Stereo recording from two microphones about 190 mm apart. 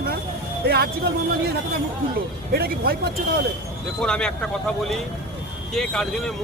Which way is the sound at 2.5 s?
55° right (ahead or behind).